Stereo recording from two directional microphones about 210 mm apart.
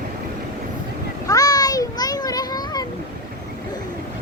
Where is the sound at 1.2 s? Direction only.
15° left (ahead or behind).